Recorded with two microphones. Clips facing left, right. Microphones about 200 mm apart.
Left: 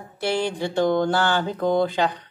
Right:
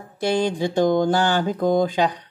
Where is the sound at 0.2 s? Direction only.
15° right (ahead or behind).